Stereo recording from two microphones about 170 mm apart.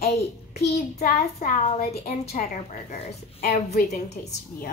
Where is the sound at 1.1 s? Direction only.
40° left (ahead or behind).